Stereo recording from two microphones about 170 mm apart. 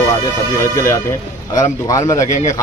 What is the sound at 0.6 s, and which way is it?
Speech, 15° left (ahead or behind).